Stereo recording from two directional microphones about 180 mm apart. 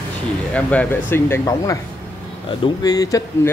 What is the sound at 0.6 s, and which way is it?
Speech, 10° left (ahead or behind).